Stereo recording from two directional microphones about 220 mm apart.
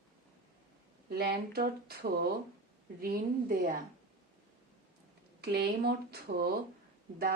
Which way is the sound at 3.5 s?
40° right (ahead or behind).